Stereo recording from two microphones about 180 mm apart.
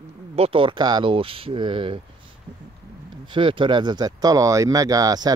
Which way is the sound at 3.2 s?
25° right (ahead or behind).